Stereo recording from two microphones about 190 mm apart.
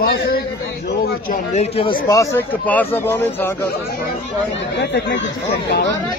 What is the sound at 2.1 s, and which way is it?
Speech, 15° left (ahead or behind).